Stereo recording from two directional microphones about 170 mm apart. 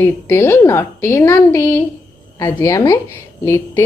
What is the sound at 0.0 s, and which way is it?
A woman's voice, 15° left (ahead or behind).